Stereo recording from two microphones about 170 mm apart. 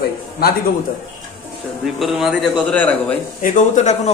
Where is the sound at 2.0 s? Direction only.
Centre (ahead or behind).